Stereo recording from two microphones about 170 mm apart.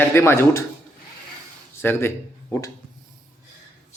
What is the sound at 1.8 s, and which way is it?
Speech, 15° left (ahead or behind).